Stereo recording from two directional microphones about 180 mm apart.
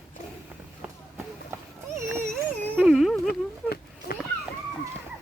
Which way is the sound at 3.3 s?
55° left (ahead or behind).